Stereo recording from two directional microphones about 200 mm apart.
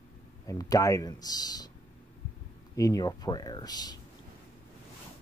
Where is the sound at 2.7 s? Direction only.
15° left (ahead or behind).